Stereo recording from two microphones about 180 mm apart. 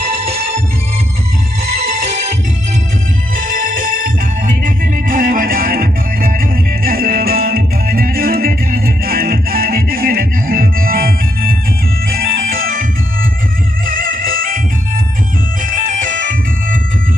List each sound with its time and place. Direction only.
0.1 s music: 35° right (ahead or behind)
3.3 s music: 50° right (ahead or behind)
13.8 s music: 50° right (ahead or behind)
15.6 s music: 50° right (ahead or behind)